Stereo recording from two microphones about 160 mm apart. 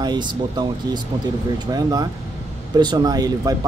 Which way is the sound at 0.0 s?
25° right (ahead or behind).